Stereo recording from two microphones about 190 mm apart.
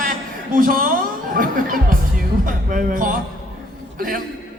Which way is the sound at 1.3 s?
45° right (ahead or behind).